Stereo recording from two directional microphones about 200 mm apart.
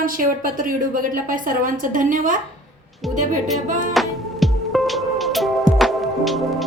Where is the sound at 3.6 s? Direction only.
40° right (ahead or behind).